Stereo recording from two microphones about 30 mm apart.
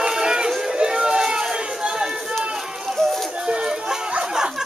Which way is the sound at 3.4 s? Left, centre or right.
Right.